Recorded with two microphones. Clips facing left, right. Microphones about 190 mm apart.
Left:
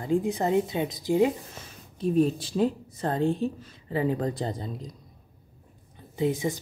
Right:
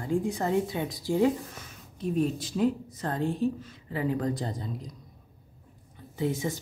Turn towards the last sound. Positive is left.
turn(degrees=15)  # may be behind; listen again after turning